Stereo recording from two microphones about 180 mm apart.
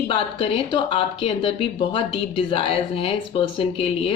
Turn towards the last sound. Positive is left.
turn(degrees=30)  # may be behind; listen again after turning